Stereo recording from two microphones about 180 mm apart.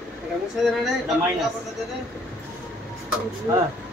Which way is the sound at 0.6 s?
Centre (ahead or behind).